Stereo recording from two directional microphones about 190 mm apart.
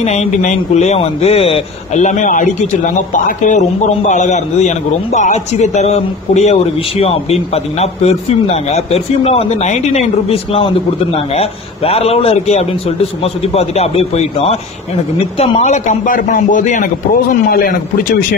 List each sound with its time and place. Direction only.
0.0 s a man's voice: 35° left (ahead or behind)